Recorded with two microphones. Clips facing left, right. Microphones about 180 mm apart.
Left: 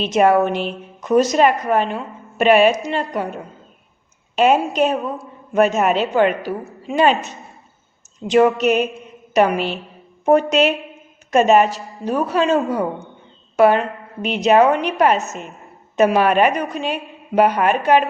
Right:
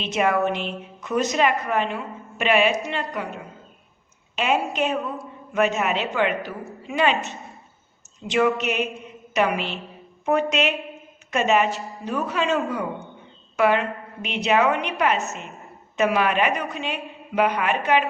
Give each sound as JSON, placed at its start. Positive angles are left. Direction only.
{"t": 0.0, "sound": "a woman's voice", "side_deg": 40}